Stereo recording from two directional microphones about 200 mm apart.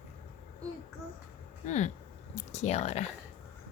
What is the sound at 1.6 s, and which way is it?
Speech, 35° left (ahead or behind).